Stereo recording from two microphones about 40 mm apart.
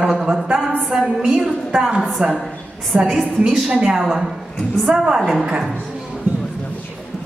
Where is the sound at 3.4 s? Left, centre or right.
Right.